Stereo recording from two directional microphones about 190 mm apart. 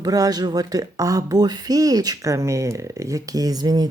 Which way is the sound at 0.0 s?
20° right (ahead or behind).